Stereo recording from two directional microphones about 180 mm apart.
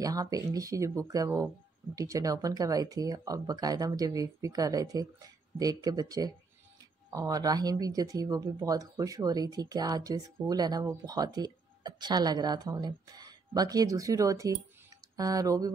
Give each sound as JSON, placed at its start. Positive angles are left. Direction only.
{"t": 0.0, "sound": "speech", "side_deg": -20}